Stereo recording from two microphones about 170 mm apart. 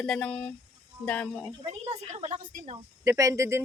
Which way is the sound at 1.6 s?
40° right (ahead or behind).